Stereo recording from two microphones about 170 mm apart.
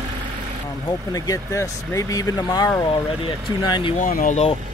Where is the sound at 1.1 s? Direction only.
20° left (ahead or behind).